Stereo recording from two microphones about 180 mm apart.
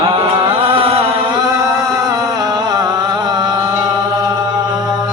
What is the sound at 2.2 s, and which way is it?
Music, 20° right (ahead or behind).